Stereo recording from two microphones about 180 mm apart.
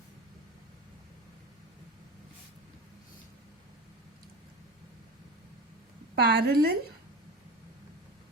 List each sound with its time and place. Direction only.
6.1 s a woman's voice: 60° right (ahead or behind)